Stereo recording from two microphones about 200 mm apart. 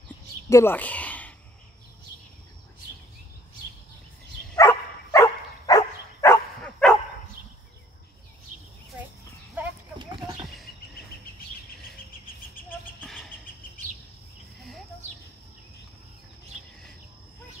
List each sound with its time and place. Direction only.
0.5 s speech: 10° left (ahead or behind)
4.6 s dog: 15° left (ahead or behind)
6.6 s dog: 5° left (ahead or behind)
9.6 s horse: 10° right (ahead or behind)
9.9 s a sound: 20° right (ahead or behind)
12.6 s a sound: centre (ahead or behind)